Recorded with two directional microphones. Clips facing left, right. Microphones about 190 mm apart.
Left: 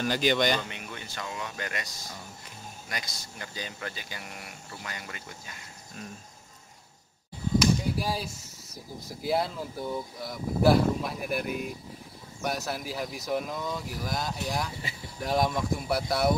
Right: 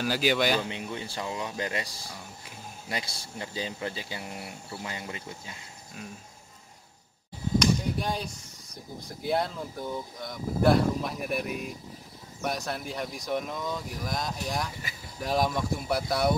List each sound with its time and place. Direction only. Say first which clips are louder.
0.0 s speech: even; 5° right (ahead or behind)
0.7 s speech: right 6 dB; 25° right (ahead or behind)
7.5 s a sound: left 1 dB; 5° left (ahead or behind)
9.0 s speech: even; centre (ahead or behind)